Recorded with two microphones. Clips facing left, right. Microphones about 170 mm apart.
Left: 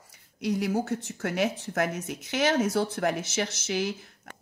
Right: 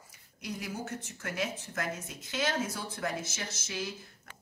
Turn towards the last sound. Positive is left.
turn(degrees=70)  # may be behind; listen again after turning